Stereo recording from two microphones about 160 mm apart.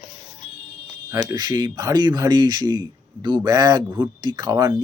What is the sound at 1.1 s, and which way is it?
Speech, 25° right (ahead or behind).